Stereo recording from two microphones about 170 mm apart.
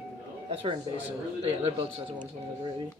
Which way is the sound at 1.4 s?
35° right (ahead or behind).